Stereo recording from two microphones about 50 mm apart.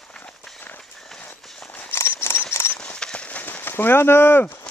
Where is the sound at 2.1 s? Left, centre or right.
Left.